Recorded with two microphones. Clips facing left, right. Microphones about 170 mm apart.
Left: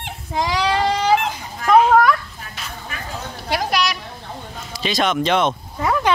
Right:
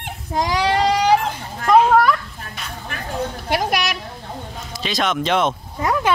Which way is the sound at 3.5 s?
55° right (ahead or behind).